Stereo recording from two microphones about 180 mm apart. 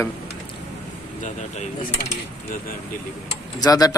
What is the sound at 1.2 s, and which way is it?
Speech, 40° left (ahead or behind).